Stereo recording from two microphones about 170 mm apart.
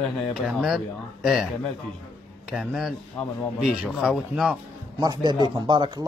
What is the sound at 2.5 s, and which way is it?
Speech, 5° right (ahead or behind).